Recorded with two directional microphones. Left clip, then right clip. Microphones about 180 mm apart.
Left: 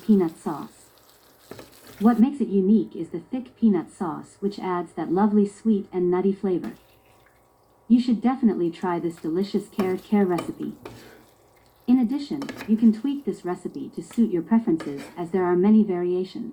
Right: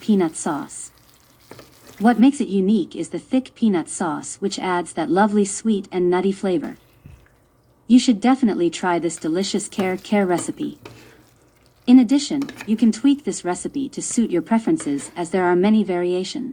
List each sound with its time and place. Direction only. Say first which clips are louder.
0.1 s a woman's voice: right 3 dB; 75° right (ahead or behind)
2.0 s a woman's voice: right 5 dB; 75° right (ahead or behind)
7.9 s a woman's voice: right 6 dB; 75° right (ahead or behind)
11.9 s a woman's voice: right 8 dB; 75° right (ahead or behind)